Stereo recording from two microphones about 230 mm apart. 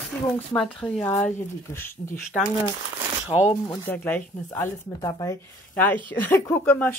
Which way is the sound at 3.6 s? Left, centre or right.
Centre.